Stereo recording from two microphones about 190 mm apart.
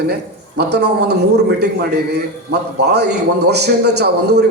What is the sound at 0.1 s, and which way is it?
A man's voice, 60° right (ahead or behind).